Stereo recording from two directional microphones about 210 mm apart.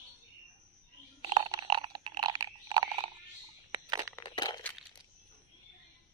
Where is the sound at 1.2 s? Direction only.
20° right (ahead or behind).